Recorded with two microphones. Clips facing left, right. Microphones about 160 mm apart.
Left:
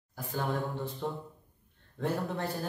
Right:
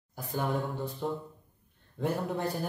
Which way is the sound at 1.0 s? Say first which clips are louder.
Right 2 dB; 10° right (ahead or behind).